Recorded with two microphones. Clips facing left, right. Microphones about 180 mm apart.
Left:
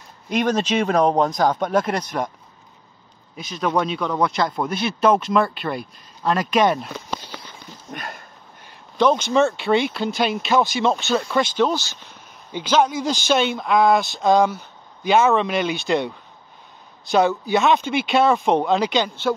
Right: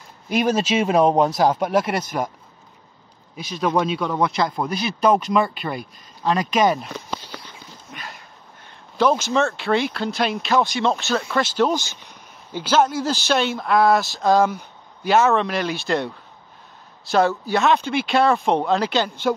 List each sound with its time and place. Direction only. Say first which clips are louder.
0.3 s speech: right 1 dB; 10° right (ahead or behind)
1.5 s speech: even; 5° right (ahead or behind)
3.3 s speech: right 1 dB; centre (ahead or behind)
7.9 s a sound: left 5 dB; 50° left (ahead or behind)
8.9 s speech: left 1 dB; 5° right (ahead or behind)